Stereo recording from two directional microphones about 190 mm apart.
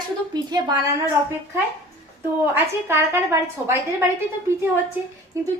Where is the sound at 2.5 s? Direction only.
10° right (ahead or behind).